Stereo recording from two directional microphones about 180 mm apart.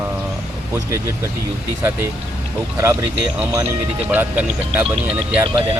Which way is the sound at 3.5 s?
10° right (ahead or behind).